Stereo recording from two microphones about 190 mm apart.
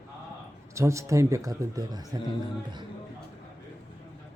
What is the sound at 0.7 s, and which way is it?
Speech, 15° right (ahead or behind).